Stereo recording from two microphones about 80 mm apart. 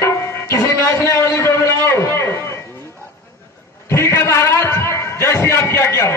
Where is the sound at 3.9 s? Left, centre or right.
Left.